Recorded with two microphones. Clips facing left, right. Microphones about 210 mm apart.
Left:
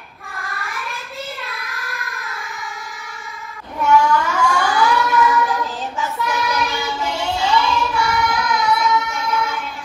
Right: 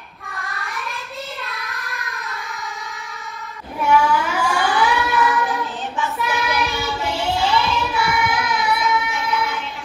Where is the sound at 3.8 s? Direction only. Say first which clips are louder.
Left 2 dB; 5° right (ahead or behind).